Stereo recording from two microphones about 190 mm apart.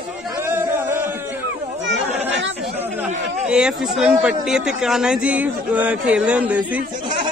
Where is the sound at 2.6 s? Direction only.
10° right (ahead or behind).